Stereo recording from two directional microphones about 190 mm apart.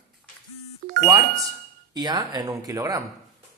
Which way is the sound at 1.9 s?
20° right (ahead or behind).